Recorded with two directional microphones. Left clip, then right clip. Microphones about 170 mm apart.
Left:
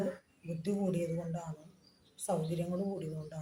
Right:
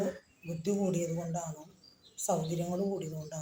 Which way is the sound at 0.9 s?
25° left (ahead or behind).